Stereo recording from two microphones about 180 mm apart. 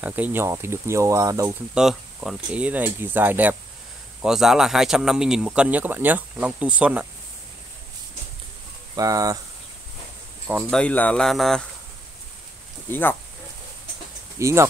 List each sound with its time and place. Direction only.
0.0 s speech: 10° right (ahead or behind)
1.8 s speech: 5° right (ahead or behind)
8.9 s speech: 20° right (ahead or behind)
10.7 s speech: 5° left (ahead or behind)
14.4 s speech: 15° right (ahead or behind)